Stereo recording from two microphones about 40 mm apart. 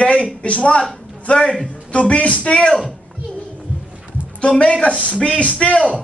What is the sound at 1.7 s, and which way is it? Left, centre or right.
Speech, left.